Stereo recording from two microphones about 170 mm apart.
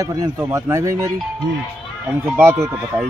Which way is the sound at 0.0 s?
20° right (ahead or behind).